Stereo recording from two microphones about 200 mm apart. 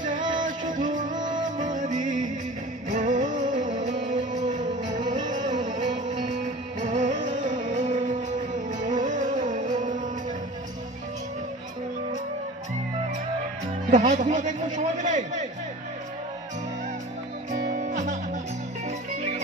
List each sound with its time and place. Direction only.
0.2 s music: 25° right (ahead or behind)
0.5 s music: 40° right (ahead or behind)
13.8 s a man's voice: 35° right (ahead or behind)
17.5 s music: 40° right (ahead or behind)